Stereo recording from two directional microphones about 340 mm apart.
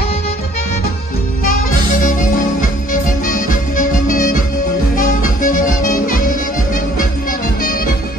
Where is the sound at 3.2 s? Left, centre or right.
Left.